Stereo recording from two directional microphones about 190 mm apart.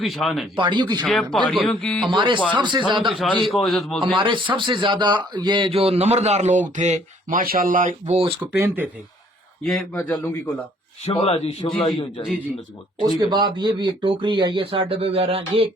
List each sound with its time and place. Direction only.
0.0 s a man's voice: centre (ahead or behind)
0.5 s speech: 25° right (ahead or behind)
1.0 s a man's voice: centre (ahead or behind)
2.0 s speech: 25° right (ahead or behind)
3.2 s a man's voice: centre (ahead or behind)
4.2 s a man's voice: 25° right (ahead or behind)
8.4 s speech: 15° right (ahead or behind)
9.9 s a man's voice: 10° left (ahead or behind)
11.0 s a man's voice: 30° left (ahead or behind)
13.1 s speech: 25° right (ahead or behind)